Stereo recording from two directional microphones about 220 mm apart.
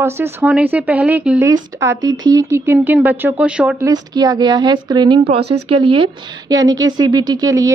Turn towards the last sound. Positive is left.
turn(degrees=-15)  # may be behind; listen again after turning